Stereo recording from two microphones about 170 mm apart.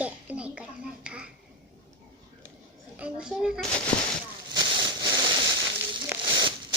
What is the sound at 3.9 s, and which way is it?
Speech, 30° left (ahead or behind).